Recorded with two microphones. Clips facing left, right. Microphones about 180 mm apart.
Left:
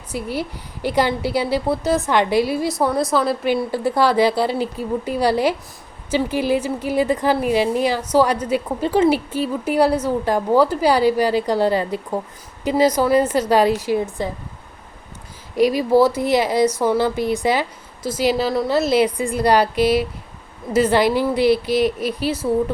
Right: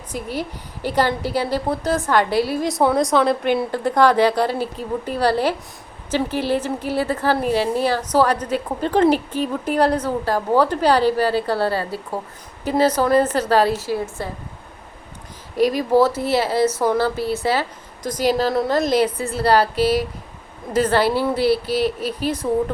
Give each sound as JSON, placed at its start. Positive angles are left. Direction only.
{"t": 0.1, "sound": "a woman's voice", "side_deg": 10}
{"t": 2.6, "sound": "a woman's voice", "side_deg": 0}
{"t": 15.5, "sound": "a woman's voice", "side_deg": 10}
{"t": 20.7, "sound": "a woman's voice", "side_deg": 10}